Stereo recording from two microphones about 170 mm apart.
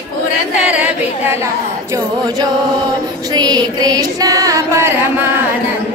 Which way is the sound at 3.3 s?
25° right (ahead or behind).